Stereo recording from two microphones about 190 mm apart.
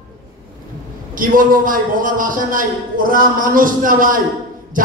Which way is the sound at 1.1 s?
45° right (ahead or behind).